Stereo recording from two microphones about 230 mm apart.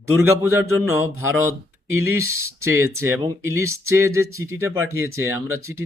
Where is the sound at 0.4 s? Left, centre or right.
Right.